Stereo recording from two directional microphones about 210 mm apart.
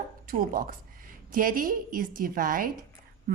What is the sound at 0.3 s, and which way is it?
A woman's voice, 45° right (ahead or behind).